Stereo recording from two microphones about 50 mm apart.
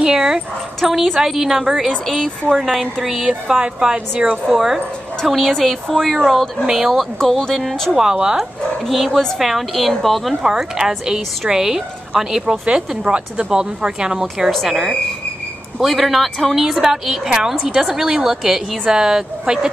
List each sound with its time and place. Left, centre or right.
0.0 s a woman's voice: centre
3.4 s a woman's voice: centre
4.5 s a woman's voice: centre
5.2 s a woman's voice: centre
7.2 s speech: centre
7.9 s a woman's voice: centre
8.8 s a woman's voice: centre
10.4 s a woman's voice: centre
14.5 s a woman's voice: centre